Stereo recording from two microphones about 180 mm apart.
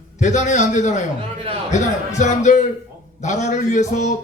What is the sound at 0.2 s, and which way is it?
A man's voice, 40° left (ahead or behind).